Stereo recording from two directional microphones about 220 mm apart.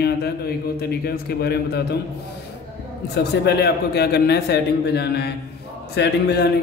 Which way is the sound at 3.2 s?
50° left (ahead or behind).